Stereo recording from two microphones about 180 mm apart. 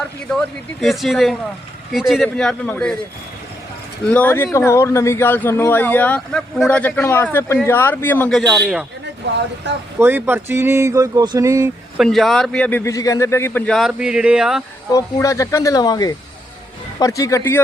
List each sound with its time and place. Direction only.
0.3 s a man's voice: centre (ahead or behind)
4.1 s a man's voice: 10° left (ahead or behind)
9.7 s speech: 75° right (ahead or behind)
10.0 s a sound: 10° right (ahead or behind)
11.9 s a man's voice: centre (ahead or behind)
14.9 s a man's voice: 15° left (ahead or behind)